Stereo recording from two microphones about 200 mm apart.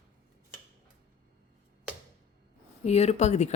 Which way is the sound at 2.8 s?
35° left (ahead or behind).